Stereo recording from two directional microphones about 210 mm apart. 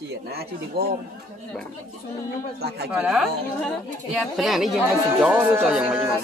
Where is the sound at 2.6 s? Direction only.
50° right (ahead or behind).